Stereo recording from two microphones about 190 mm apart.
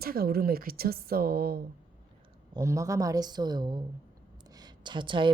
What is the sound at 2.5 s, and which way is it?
Speech, 15° right (ahead or behind).